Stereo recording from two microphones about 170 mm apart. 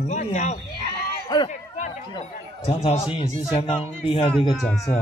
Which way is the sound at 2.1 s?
35° left (ahead or behind).